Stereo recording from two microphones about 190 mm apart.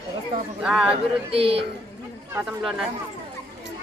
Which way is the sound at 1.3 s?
30° right (ahead or behind).